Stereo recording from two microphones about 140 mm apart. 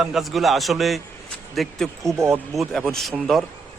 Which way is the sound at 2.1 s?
20° right (ahead or behind).